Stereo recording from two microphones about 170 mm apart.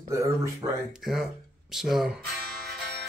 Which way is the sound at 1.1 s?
Centre (ahead or behind).